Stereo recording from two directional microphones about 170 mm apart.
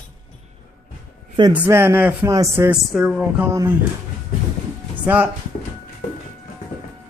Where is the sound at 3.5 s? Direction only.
15° right (ahead or behind).